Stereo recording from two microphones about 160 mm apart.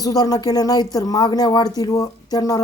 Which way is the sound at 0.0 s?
25° left (ahead or behind).